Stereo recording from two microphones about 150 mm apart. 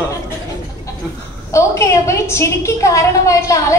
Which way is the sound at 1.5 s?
20° left (ahead or behind).